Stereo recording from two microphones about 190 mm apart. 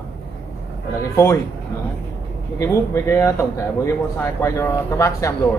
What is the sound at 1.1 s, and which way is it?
Speech, 15° left (ahead or behind).